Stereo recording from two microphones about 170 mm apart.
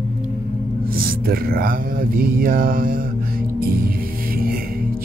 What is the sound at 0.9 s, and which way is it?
Mantra, 60° right (ahead or behind).